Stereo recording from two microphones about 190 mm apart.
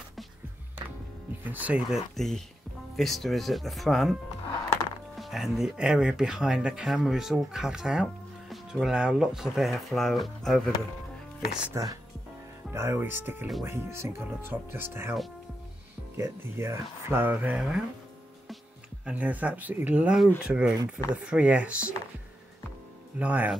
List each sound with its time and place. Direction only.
1.4 s speech: 10° right (ahead or behind)
11.6 s speech: 15° right (ahead or behind)
16.2 s speech: 15° right (ahead or behind)
19.0 s speech: 10° right (ahead or behind)
23.1 s speech: 10° right (ahead or behind)